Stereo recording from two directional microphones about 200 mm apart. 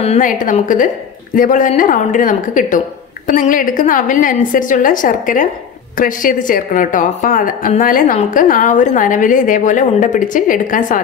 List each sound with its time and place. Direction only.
0.0 s a woman's voice: 35° left (ahead or behind)